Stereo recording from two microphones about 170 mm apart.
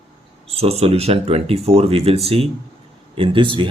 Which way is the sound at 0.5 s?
35° right (ahead or behind).